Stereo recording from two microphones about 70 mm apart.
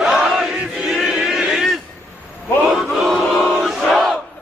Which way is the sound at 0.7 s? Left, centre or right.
Centre.